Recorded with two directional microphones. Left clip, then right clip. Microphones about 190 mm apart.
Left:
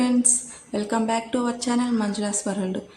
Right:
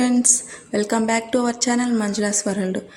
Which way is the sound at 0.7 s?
20° right (ahead or behind).